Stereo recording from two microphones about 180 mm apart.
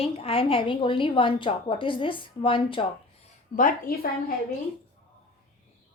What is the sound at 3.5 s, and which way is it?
Speech, 50° left (ahead or behind).